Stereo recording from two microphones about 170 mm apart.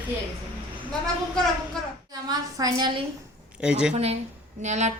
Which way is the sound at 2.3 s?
20° right (ahead or behind).